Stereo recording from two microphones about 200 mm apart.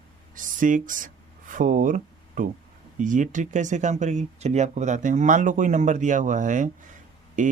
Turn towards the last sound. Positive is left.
turn(degrees=-40)  # may be behind; listen again after turning